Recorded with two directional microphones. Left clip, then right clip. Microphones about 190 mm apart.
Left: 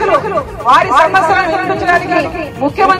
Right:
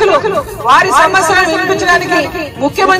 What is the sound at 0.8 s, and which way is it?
Speech, 30° right (ahead or behind).